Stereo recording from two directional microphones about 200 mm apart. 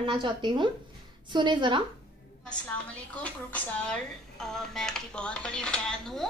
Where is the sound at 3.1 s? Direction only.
5° left (ahead or behind).